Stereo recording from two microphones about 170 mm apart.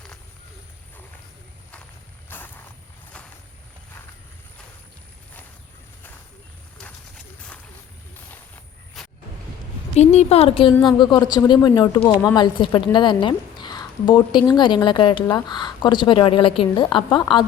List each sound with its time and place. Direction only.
2.3 s vehicle: 10° left (ahead or behind)
10.0 s speech: 40° left (ahead or behind)